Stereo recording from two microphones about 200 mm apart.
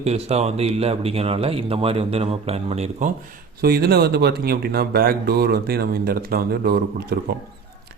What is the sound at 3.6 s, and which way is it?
Speech, 50° right (ahead or behind).